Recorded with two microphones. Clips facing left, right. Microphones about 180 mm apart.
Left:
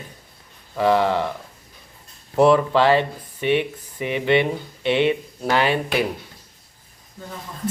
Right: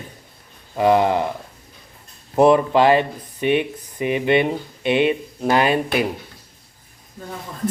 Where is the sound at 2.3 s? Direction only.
20° right (ahead or behind).